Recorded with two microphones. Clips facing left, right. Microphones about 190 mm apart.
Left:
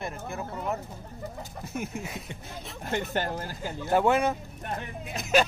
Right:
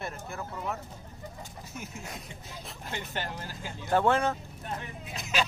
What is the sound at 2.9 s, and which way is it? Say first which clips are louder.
Speech: left 8 dB; 50° left (ahead or behind).